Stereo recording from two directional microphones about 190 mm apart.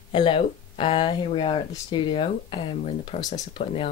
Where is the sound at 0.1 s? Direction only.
25° left (ahead or behind).